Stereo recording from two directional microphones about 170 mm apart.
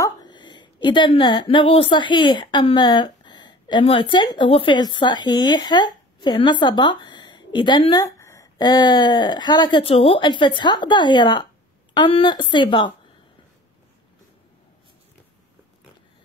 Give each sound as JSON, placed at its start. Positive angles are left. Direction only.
{"t": 0.0, "sound": "a woman's voice", "side_deg": 25}